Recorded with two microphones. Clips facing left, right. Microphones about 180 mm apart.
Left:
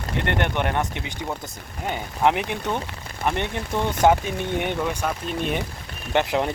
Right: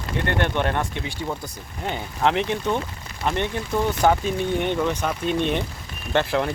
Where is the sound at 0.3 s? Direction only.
15° left (ahead or behind).